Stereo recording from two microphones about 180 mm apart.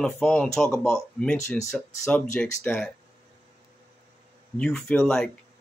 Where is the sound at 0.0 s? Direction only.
5° left (ahead or behind).